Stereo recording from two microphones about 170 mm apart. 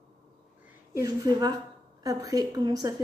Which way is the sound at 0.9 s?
20° right (ahead or behind).